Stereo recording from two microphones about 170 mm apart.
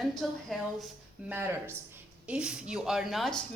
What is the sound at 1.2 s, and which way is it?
Speech, 10° right (ahead or behind).